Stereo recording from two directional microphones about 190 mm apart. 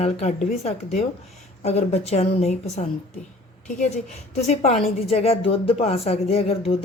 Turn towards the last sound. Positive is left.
turn(degrees=30)  # may be behind; listen again after turning